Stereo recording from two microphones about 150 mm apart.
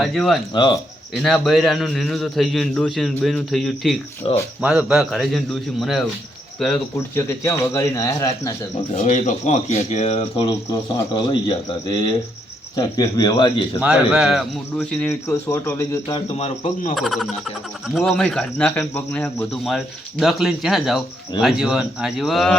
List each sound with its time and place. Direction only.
0.0 s a man's voice: centre (ahead or behind)
0.5 s a man's voice: 30° left (ahead or behind)
1.1 s a man's voice: centre (ahead or behind)
4.2 s a man's voice: 35° left (ahead or behind)
4.6 s a man's voice: 5° right (ahead or behind)
7.2 s a man's voice: 15° left (ahead or behind)
9.0 s speech: 50° left (ahead or behind)
11.1 s a man's voice: 30° left (ahead or behind)
12.7 s a man's voice: 25° left (ahead or behind)
13.8 s a man's voice: 5° right (ahead or behind)
14.8 s speech: 10° left (ahead or behind)
16.9 s a man's voice: centre (ahead or behind)